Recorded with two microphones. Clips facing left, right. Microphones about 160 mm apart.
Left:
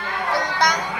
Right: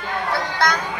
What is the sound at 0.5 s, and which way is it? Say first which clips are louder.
Speech: right 1 dB; 15° left (ahead or behind).